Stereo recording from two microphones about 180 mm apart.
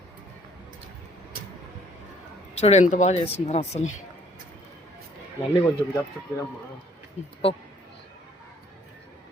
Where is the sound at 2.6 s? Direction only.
35° left (ahead or behind).